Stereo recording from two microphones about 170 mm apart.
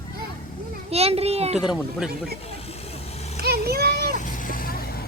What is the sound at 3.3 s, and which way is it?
Vehicle, 65° right (ahead or behind).